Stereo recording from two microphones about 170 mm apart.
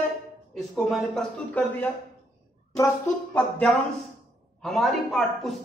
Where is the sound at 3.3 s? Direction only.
5° left (ahead or behind).